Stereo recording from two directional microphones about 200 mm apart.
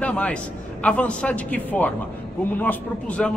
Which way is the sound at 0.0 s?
5° left (ahead or behind).